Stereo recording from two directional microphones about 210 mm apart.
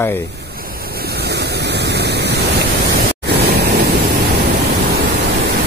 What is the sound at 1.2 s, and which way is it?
Pink noise, 55° right (ahead or behind).